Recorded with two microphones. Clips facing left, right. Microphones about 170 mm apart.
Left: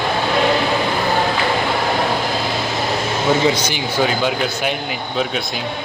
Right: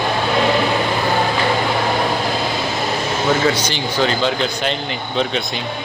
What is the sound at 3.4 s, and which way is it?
Speech, 10° left (ahead or behind).